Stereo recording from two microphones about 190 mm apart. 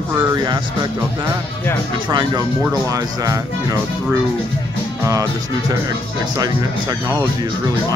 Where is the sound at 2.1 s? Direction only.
20° right (ahead or behind).